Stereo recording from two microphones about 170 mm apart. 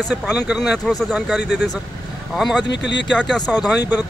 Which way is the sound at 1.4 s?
80° left.